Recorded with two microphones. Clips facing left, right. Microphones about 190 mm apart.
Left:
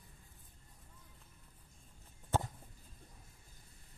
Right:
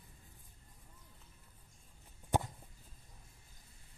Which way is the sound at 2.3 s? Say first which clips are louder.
Right 1 dB; 15° right (ahead or behind).